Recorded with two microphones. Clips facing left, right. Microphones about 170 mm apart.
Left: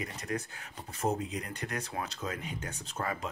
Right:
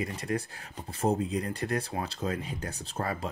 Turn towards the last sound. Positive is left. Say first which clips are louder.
# right 3 dB
turn(degrees=-35)  # may be behind; listen again after turning